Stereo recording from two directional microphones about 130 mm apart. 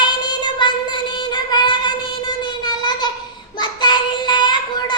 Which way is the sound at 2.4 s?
35° left (ahead or behind).